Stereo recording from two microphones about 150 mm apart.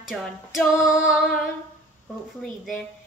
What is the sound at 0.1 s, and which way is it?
Female singing, centre (ahead or behind).